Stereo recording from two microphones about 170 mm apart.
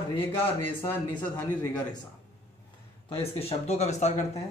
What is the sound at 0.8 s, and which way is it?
Speech, 15° left (ahead or behind).